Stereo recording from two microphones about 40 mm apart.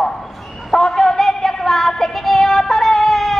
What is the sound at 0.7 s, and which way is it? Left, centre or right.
Music, centre.